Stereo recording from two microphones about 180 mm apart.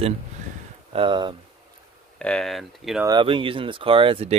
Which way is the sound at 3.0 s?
25° right (ahead or behind).